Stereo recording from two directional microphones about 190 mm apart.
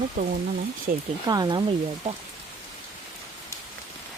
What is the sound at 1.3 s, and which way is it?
Speech, 20° right (ahead or behind).